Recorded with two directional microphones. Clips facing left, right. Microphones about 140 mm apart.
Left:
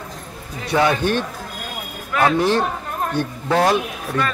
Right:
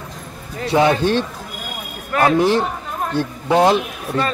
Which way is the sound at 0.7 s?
25° right (ahead or behind).